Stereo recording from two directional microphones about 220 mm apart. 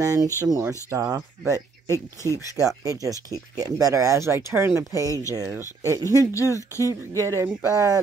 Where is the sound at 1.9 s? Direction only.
15° left (ahead or behind).